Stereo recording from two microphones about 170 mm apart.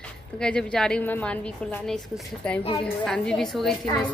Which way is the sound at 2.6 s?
35° left (ahead or behind).